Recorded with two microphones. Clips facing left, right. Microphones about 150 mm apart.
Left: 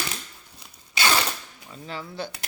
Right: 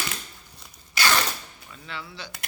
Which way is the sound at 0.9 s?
20° left (ahead or behind).